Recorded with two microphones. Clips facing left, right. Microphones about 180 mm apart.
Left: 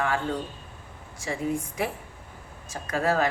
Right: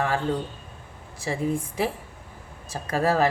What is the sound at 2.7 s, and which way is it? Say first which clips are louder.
Speech: right 2 dB; 35° right (ahead or behind).